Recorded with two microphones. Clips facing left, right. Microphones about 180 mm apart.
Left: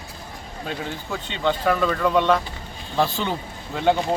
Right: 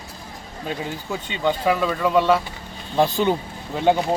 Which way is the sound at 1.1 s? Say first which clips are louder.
Right 1 dB; 10° right (ahead or behind).